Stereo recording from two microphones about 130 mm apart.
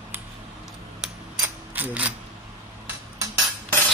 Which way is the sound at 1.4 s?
10° right (ahead or behind).